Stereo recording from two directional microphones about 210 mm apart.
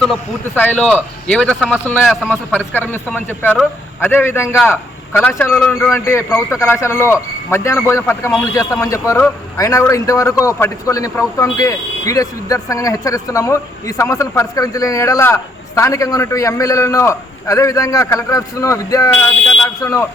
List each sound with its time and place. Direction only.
0.0 s a man's voice: 5° left (ahead or behind)
2.2 s speech: 5° right (ahead or behind)
2.7 s a man's voice: 5° left (ahead or behind)